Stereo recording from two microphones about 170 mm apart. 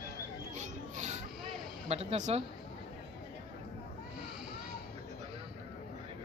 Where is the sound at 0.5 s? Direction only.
45° right (ahead or behind).